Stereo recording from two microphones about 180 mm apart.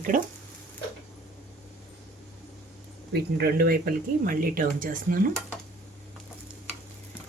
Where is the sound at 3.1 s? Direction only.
60° right (ahead or behind).